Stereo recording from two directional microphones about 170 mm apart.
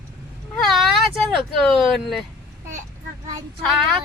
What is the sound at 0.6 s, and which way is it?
A woman's voice, centre (ahead or behind).